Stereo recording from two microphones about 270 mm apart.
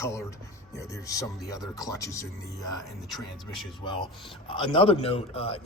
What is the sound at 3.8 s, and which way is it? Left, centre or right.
A man's voice, centre.